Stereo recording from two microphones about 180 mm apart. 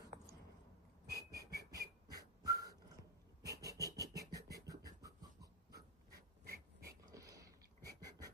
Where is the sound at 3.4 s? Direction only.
65° right (ahead or behind).